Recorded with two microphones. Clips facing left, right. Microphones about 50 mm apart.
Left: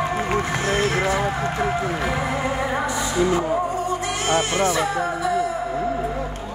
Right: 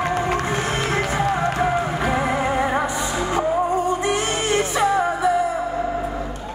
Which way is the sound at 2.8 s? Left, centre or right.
Right.